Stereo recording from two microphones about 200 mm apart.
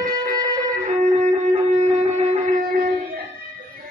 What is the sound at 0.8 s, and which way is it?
Shofar, 35° right (ahead or behind).